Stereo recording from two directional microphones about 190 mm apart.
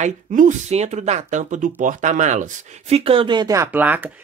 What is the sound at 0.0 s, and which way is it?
Speech, 40° right (ahead or behind).